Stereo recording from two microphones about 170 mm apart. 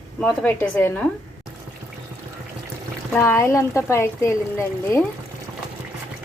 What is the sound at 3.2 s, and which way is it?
Speech, 15° left (ahead or behind).